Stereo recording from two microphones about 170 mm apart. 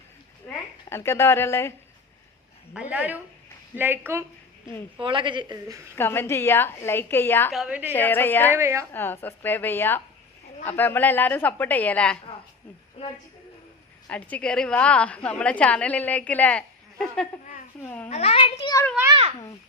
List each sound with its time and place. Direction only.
0.4 s a woman's voice: 15° left (ahead or behind)
2.7 s a woman's voice: 10° right (ahead or behind)
4.6 s a woman's voice: 15° left (ahead or behind)
4.9 s a woman's voice: 30° right (ahead or behind)
6.0 s a woman's voice: 15° left (ahead or behind)
7.5 s a woman's voice: 5° right (ahead or behind)
7.9 s a woman's voice: 10° left (ahead or behind)
8.5 s a woman's voice: 15° right (ahead or behind)
8.9 s a woman's voice: 10° left (ahead or behind)
14.1 s a woman's voice: 10° left (ahead or behind)
18.1 s a child's voice: 35° left (ahead or behind)